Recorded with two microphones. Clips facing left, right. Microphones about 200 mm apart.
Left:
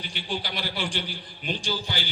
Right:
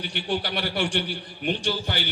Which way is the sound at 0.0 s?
65° right (ahead or behind).